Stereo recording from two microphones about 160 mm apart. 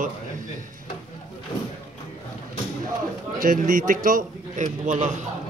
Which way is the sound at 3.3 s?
60° right (ahead or behind).